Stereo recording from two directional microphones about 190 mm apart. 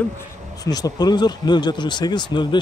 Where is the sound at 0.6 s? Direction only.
20° left (ahead or behind).